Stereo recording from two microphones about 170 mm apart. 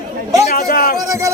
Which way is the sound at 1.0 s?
20° right (ahead or behind).